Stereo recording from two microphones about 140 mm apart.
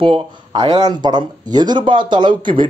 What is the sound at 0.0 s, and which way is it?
Speech, 40° right (ahead or behind).